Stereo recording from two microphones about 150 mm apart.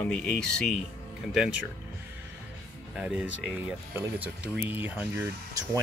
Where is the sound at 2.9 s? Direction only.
5° right (ahead or behind).